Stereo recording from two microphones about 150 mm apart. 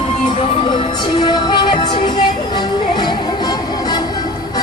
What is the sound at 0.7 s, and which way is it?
Music, 30° left (ahead or behind).